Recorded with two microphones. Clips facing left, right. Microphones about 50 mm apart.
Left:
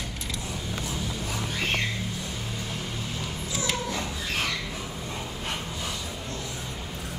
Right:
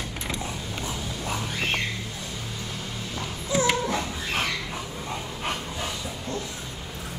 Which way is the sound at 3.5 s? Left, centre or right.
Right.